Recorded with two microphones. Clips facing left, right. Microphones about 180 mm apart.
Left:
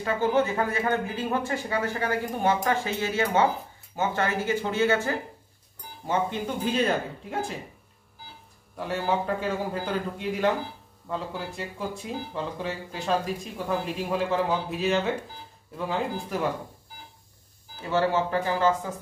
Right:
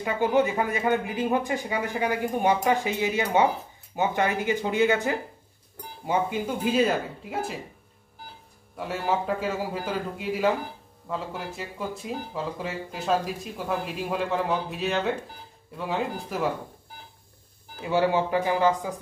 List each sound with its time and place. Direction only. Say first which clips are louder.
0.0 s speech: right 1 dB; 15° right (ahead or behind)
8.7 s speech: even; centre (ahead or behind)
17.8 s speech: right 1 dB; 15° right (ahead or behind)